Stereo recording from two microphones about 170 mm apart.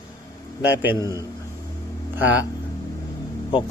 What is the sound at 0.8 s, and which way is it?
Speech, 15° right (ahead or behind).